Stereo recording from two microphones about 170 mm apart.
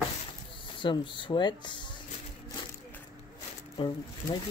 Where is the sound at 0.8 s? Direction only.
30° left (ahead or behind).